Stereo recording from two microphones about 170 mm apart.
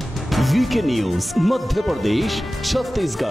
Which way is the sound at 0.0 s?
Centre (ahead or behind).